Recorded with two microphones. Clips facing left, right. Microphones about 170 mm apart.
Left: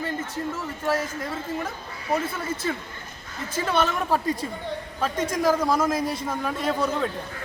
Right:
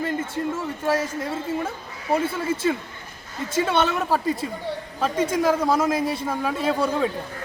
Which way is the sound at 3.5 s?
25° right (ahead or behind).